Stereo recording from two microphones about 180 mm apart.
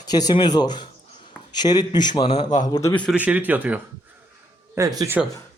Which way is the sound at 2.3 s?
45° left (ahead or behind).